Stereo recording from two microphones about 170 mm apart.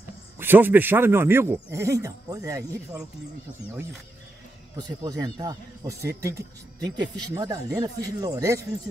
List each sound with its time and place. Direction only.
0.4 s speech: 10° right (ahead or behind)
4.7 s speech: 20° right (ahead or behind)